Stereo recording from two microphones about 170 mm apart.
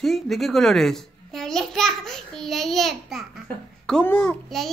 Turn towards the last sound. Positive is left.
turn(degrees=0)  # may be behind; listen again after turning